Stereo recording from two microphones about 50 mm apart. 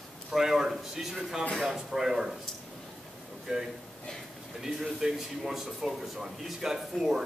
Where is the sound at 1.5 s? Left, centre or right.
Centre.